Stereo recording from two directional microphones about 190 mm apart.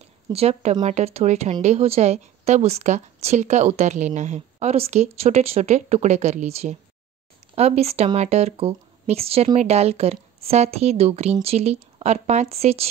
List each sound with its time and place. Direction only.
0.3 s speech: 30° right (ahead or behind)